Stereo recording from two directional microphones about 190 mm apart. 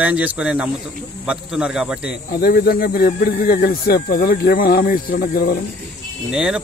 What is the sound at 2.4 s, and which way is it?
Speech, 55° left (ahead or behind).